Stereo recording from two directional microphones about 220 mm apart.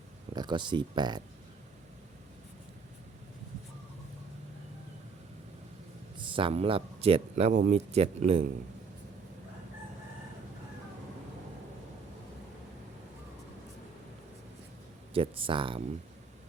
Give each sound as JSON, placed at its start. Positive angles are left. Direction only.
{"t": 0.3, "sound": "speech", "side_deg": -20}
{"t": 6.1, "sound": "speech", "side_deg": -25}
{"t": 15.1, "sound": "speech", "side_deg": -25}